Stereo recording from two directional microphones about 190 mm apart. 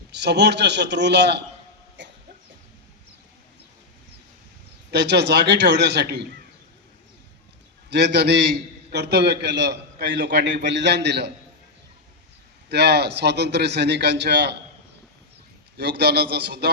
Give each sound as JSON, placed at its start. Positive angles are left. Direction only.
{"t": 0.1, "sound": "a man's voice", "side_deg": -65}
{"t": 4.9, "sound": "a man's voice", "side_deg": -60}
{"t": 7.9, "sound": "a man's voice", "side_deg": -60}
{"t": 12.6, "sound": "a man's voice", "side_deg": -60}
{"t": 15.8, "sound": "a man's voice", "side_deg": -60}